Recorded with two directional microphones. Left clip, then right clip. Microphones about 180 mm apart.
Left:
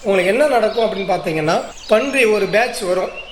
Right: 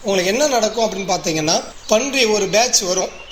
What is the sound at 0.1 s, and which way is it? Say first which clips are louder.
A woman's voice: left 3 dB; 25° right (ahead or behind).